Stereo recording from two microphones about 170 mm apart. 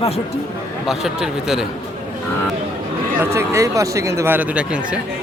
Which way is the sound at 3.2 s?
15° right (ahead or behind).